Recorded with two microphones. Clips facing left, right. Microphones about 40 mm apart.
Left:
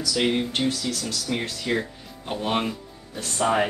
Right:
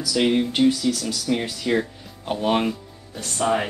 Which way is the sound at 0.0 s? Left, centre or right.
Centre.